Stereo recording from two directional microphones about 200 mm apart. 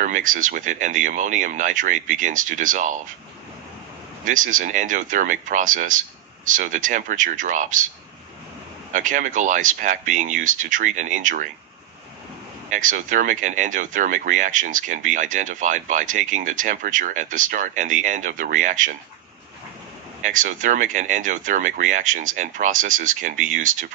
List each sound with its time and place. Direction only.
0.0 s speech: 40° right (ahead or behind)
4.2 s speech: 40° right (ahead or behind)
8.9 s speech: 40° right (ahead or behind)
12.7 s speech: 40° right (ahead or behind)
20.2 s speech: 40° right (ahead or behind)